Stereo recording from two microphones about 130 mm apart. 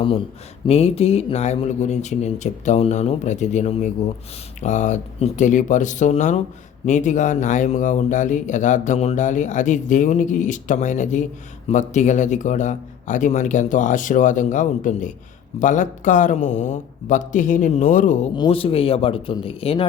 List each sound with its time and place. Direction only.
0.7 s speech: 50° left (ahead or behind); by 18.3 s 75° left (ahead or behind)
18.3 s speech: 40° left (ahead or behind)